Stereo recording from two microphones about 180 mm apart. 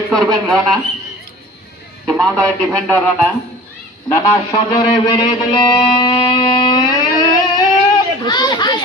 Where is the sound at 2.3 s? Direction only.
15° right (ahead or behind).